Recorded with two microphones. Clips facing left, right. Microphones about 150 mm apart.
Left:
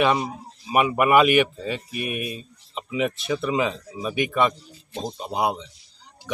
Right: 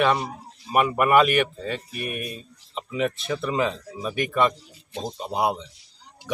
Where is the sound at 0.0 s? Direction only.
5° left (ahead or behind).